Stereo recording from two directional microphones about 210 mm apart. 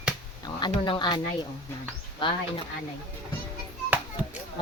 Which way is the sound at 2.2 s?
25° left (ahead or behind).